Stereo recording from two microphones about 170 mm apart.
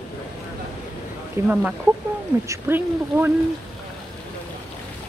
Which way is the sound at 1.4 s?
15° right (ahead or behind).